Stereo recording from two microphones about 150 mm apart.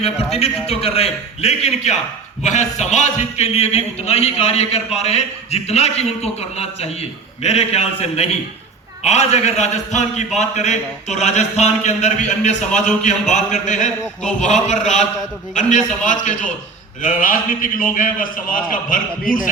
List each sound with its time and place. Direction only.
0.0 s a man's voice: 45° left (ahead or behind)
16.0 s a man's voice: 55° left (ahead or behind)